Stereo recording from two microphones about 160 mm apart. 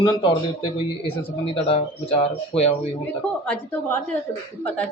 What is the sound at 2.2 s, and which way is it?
Speech, 40° left (ahead or behind).